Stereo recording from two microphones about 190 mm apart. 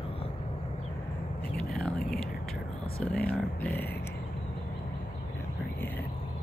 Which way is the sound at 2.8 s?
5° left (ahead or behind).